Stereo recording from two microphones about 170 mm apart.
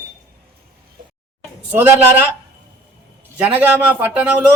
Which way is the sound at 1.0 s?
55° right (ahead or behind).